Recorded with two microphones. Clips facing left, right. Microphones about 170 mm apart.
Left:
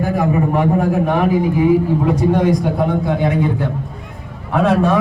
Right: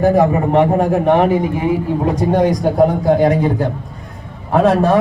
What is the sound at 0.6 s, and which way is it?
Speech, 20° right (ahead or behind).